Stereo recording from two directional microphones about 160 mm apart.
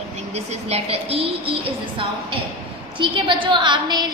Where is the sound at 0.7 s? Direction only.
40° right (ahead or behind).